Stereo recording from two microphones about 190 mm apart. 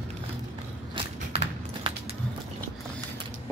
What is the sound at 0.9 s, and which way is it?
Walk, 30° right (ahead or behind).